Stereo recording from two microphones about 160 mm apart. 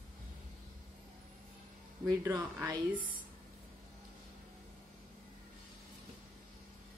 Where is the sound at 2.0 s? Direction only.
20° right (ahead or behind).